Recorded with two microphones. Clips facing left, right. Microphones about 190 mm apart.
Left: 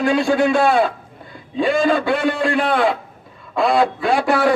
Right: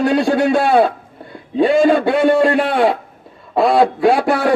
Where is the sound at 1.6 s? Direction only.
60° right (ahead or behind).